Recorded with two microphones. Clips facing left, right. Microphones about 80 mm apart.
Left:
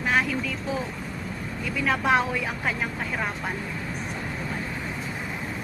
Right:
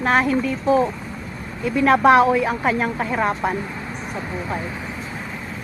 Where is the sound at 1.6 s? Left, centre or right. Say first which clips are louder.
Right 11 dB; right.